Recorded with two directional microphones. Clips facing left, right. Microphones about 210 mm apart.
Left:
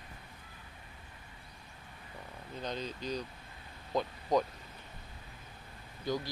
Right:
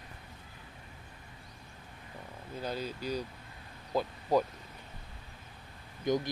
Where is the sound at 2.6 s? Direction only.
5° right (ahead or behind).